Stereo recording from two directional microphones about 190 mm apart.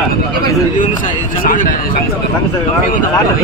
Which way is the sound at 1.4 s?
45° left (ahead or behind).